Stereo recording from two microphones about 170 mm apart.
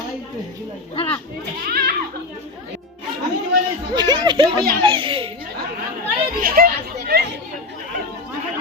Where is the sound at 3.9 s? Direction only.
25° right (ahead or behind).